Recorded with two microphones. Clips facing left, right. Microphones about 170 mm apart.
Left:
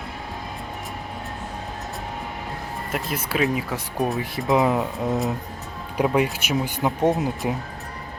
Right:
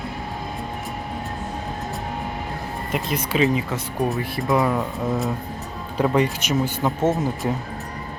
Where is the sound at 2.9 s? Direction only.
5° left (ahead or behind).